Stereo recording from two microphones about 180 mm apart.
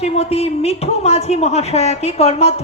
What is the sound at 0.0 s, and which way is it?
A woman's voice, 35° left (ahead or behind).